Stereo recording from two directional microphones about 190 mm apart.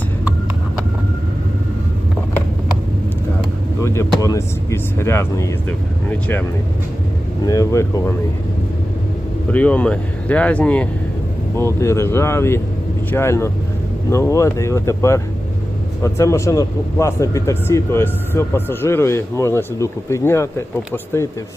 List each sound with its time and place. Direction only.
3.8 s speech: 15° left (ahead or behind)
7.4 s speech: 15° left (ahead or behind)
9.5 s speech: 5° left (ahead or behind)